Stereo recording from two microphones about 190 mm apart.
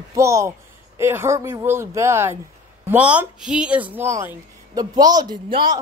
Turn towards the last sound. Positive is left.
turn(degrees=-20)  # may be behind; listen again after turning